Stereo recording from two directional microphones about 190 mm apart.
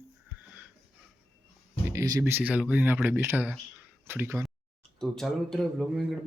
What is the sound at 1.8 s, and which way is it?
Speech, 15° right (ahead or behind).